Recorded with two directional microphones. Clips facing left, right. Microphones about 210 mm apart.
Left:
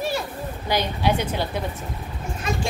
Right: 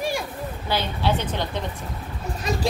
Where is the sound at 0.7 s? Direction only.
15° left (ahead or behind).